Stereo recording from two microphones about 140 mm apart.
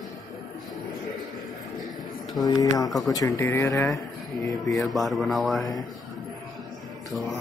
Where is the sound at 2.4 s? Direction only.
25° left (ahead or behind).